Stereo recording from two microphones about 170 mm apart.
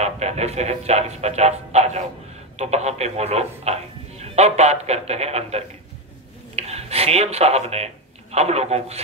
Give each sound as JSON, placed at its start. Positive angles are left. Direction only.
{"t": 0.0, "sound": "speech", "side_deg": -40}